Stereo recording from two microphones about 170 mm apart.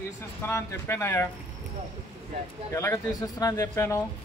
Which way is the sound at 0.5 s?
15° left (ahead or behind).